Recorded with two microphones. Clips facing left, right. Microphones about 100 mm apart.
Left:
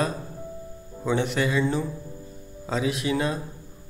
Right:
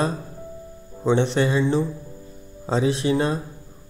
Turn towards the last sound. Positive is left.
turn(degrees=-30)  # may be behind; listen again after turning